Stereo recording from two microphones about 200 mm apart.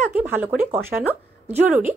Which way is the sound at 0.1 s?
10° right (ahead or behind).